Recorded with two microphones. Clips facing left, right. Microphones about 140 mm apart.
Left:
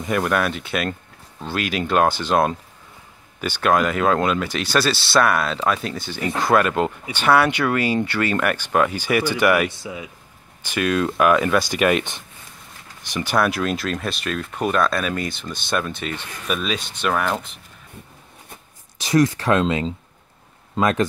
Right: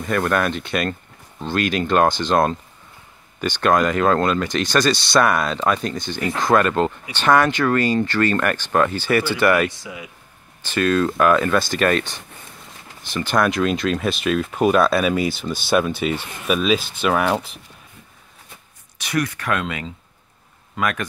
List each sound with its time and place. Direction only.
0.0 s speech: 10° left (ahead or behind)
18.9 s speech: 30° left (ahead or behind)